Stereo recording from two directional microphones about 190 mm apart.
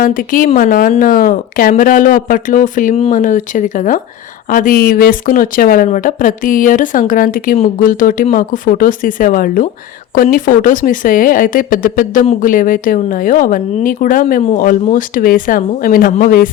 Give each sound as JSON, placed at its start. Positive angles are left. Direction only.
{"t": 0.0, "sound": "speech", "side_deg": 45}